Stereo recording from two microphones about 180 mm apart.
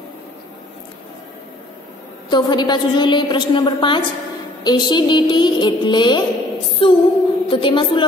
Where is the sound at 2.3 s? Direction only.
25° left (ahead or behind).